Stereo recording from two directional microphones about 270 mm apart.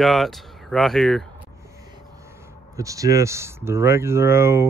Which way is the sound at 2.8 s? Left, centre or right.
Centre.